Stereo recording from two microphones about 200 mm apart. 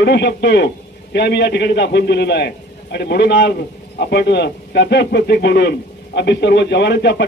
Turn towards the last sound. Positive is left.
turn(degrees=60)  # may be behind; listen again after turning